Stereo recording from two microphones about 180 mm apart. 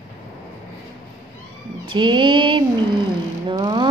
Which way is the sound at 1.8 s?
25° right (ahead or behind).